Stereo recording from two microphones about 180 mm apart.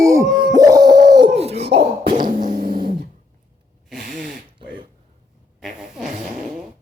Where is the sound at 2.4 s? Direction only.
50° right (ahead or behind).